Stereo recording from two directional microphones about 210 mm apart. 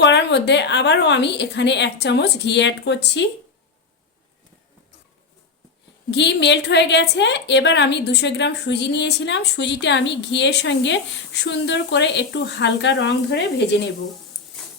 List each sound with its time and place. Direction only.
0.0 s a woman's voice: 55° left (ahead or behind)
6.1 s a woman's voice: 55° left (ahead or behind)